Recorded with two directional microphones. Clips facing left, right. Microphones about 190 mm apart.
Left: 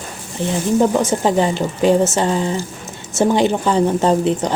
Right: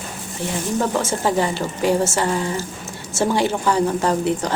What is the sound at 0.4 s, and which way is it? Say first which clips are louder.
A woman's voice: left 6 dB; 20° left (ahead or behind).